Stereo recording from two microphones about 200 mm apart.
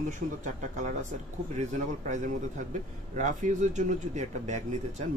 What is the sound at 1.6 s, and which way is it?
Speech, 40° right (ahead or behind).